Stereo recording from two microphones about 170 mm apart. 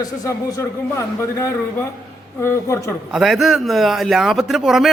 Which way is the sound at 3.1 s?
5° right (ahead or behind).